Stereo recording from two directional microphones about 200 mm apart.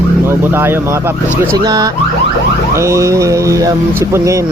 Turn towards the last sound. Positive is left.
turn(degrees=-15)  # may be behind; listen again after turning